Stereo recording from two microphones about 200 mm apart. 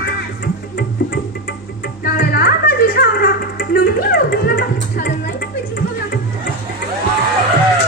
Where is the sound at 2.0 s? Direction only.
50° left (ahead or behind).